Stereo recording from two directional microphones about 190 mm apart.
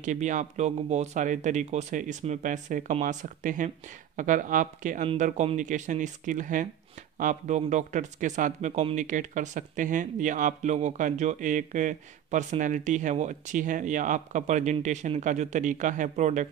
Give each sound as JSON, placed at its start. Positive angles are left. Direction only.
{"t": 0.0, "sound": "speech", "side_deg": -40}